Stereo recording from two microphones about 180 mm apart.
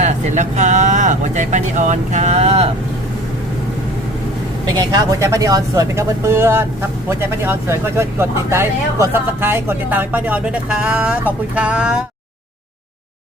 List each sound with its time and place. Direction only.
0.0 s speech: 40° right (ahead or behind)
4.6 s speech: 20° right (ahead or behind); by 11.9 s 5° right (ahead or behind)